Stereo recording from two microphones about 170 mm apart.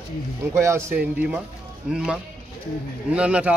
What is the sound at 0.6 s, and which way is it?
A man's voice, 15° right (ahead or behind).